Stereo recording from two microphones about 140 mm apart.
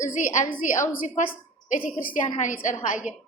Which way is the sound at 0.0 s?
65° left (ahead or behind).